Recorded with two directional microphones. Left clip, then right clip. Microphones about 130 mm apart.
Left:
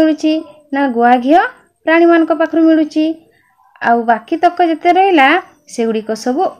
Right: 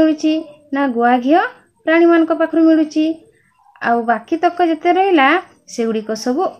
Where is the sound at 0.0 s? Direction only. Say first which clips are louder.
Left 2 dB; 30° left (ahead or behind).